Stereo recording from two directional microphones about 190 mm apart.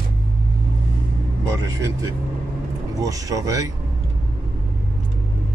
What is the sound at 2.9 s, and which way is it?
Speech, 20° right (ahead or behind).